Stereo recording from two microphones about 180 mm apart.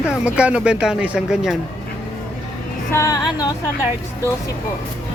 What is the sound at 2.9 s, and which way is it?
Music, 20° left (ahead or behind).